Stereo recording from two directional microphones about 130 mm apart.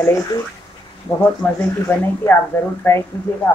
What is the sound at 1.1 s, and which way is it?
Speech, 15° left (ahead or behind).